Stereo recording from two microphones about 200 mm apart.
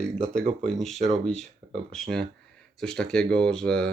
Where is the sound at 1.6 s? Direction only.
35° right (ahead or behind).